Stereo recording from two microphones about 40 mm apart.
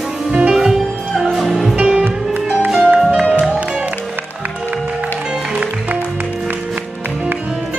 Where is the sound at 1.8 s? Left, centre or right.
Right.